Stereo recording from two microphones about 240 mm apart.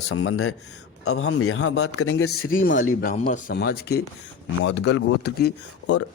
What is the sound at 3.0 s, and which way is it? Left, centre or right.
Speech, left.